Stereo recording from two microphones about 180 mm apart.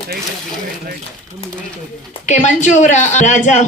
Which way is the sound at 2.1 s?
40° left (ahead or behind).